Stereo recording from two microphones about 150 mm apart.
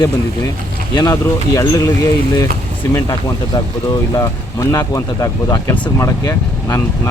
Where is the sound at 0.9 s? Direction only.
20° left (ahead or behind).